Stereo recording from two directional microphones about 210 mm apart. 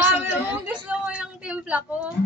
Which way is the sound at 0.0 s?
10° right (ahead or behind).